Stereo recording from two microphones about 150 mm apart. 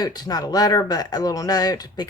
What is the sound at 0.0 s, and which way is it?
Speech, 25° left (ahead or behind).